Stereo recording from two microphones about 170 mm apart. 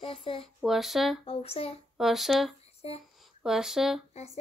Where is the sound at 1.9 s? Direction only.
Centre (ahead or behind).